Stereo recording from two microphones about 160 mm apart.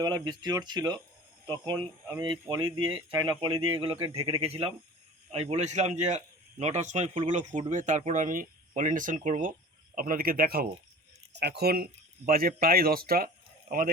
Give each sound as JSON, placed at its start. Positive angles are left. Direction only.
{"t": 0.0, "sound": "speech", "side_deg": -25}
{"t": 3.9, "sound": "speech", "side_deg": -20}
{"t": 4.4, "sound": "a man's voice", "side_deg": -40}
{"t": 11.3, "sound": "speech", "side_deg": -90}